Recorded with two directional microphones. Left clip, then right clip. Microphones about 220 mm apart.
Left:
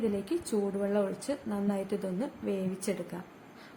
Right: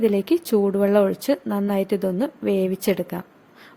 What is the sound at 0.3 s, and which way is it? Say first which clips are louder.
A woman's voice: right 12 dB; 40° right (ahead or behind).